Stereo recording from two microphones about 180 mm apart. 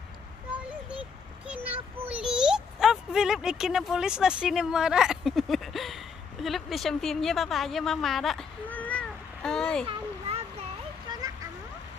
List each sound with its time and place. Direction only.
0.6 s a sound: 5° right (ahead or behind)
1.4 s child singing: 10° right (ahead or behind)
11.1 s vehicle: 20° right (ahead or behind)